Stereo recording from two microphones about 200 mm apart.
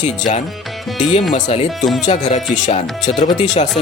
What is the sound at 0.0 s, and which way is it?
Speech, 35° left (ahead or behind).